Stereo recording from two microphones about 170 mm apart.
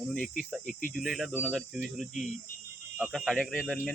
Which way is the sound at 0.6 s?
50° left (ahead or behind).